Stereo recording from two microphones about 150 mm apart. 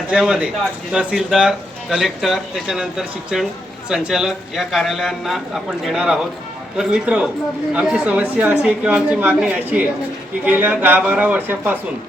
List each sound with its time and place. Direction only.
0.1 s speech: 5° right (ahead or behind)